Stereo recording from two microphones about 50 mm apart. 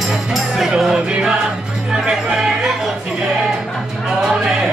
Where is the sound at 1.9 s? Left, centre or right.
Centre.